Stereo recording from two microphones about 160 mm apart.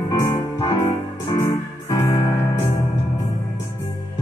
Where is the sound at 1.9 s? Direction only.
30° left (ahead or behind).